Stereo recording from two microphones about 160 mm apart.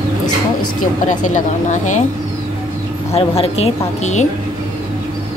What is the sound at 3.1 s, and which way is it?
Speech, 40° left (ahead or behind).